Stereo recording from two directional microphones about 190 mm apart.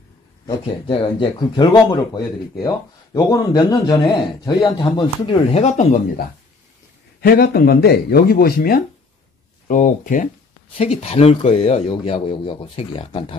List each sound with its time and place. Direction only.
0.5 s speech: 25° left (ahead or behind)
7.2 s speech: 55° left (ahead or behind)
10.8 s speech: 35° left (ahead or behind)